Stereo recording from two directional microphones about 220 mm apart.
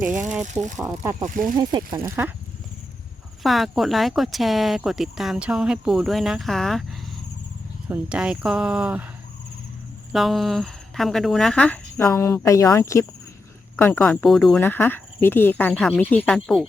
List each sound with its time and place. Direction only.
0.8 s speech: 15° right (ahead or behind)
1.2 s speech: 35° right (ahead or behind)
1.5 s speech: 20° right (ahead or behind)
3.4 s speech: centre (ahead or behind)
7.9 s speech: 5° right (ahead or behind)
10.1 s speech: centre (ahead or behind)